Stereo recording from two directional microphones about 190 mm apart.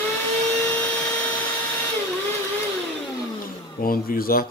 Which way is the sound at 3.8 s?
50° left (ahead or behind).